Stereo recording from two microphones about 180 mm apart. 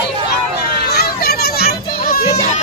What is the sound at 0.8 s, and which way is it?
Children playing, 60° left (ahead or behind).